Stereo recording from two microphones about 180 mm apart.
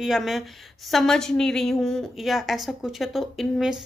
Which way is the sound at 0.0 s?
Centre (ahead or behind).